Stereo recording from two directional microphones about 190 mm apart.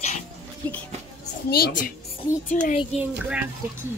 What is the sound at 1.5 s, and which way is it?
A woman's voice, 55° left (ahead or behind).